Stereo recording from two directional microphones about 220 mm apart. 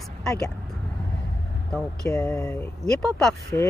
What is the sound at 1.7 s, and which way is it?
Speech, 5° left (ahead or behind).